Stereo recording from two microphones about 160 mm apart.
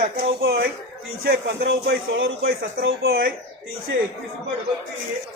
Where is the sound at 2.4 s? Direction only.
75° right (ahead or behind).